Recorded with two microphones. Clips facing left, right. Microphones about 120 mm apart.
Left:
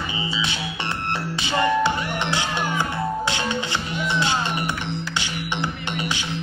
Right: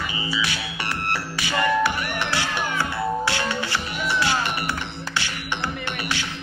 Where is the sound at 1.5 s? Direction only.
25° left (ahead or behind).